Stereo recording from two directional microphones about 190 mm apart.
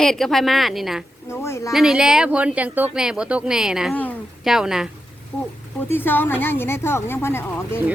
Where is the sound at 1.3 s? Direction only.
15° left (ahead or behind).